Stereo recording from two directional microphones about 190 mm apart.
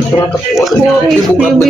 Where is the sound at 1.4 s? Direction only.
Centre (ahead or behind).